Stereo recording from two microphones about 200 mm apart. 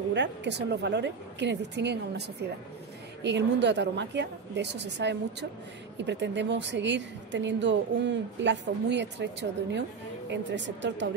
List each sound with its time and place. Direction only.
0.1 s a woman's voice: 60° right (ahead or behind)
3.3 s a woman's voice: 60° right (ahead or behind)